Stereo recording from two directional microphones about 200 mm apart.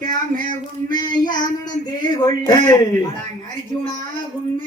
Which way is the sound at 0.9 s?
20° left (ahead or behind).